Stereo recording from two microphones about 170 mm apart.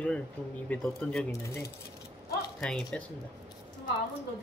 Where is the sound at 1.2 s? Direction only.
15° left (ahead or behind).